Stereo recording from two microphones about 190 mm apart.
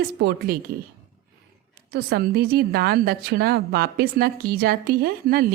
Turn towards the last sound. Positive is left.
turn(degrees=-55)  # may be behind; listen again after turning